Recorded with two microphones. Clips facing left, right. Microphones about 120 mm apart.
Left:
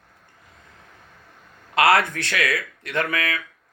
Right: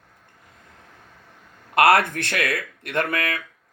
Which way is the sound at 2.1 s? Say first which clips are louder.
Even; 55° right (ahead or behind).